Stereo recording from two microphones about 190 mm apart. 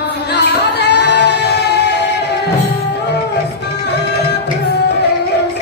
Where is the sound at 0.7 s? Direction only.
60° left (ahead or behind).